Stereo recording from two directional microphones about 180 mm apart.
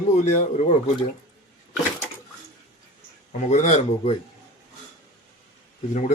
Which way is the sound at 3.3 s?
40° left (ahead or behind).